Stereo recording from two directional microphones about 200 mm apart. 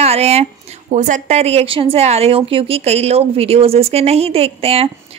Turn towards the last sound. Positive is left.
turn(degrees=-30)  # may be behind; listen again after turning